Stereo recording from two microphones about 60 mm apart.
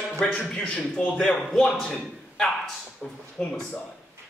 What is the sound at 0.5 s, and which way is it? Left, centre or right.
Speech, centre.